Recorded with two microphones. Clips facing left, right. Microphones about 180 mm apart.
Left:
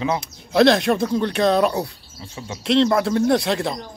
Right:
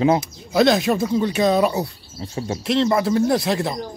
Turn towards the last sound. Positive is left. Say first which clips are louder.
# left 1 dB
turn(degrees=0)  # may be behind; listen again after turning